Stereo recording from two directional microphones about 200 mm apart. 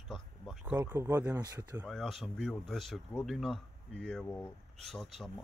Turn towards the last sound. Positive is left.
turn(degrees=0)  # may be behind; listen again after turning